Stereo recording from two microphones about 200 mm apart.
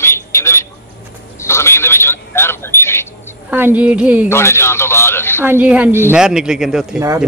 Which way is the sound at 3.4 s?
10° right (ahead or behind).